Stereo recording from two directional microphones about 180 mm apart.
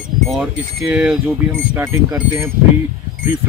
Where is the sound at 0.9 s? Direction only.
5° right (ahead or behind).